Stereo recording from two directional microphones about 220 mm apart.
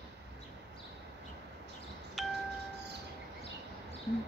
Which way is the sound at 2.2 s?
Centre (ahead or behind).